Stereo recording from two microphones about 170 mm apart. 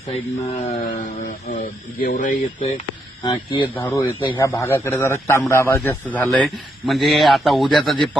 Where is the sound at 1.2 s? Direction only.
65° left (ahead or behind).